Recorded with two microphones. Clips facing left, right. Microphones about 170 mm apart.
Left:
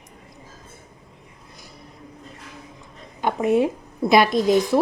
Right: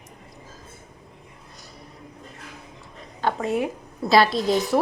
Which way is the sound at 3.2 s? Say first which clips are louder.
Left 5 dB; 15° left (ahead or behind).